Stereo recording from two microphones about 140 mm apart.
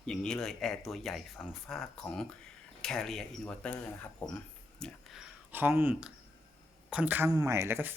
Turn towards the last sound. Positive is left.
turn(degrees=-15)  # may be behind; listen again after turning